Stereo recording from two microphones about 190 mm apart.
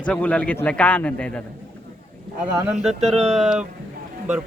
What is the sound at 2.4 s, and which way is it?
A man's voice, centre (ahead or behind).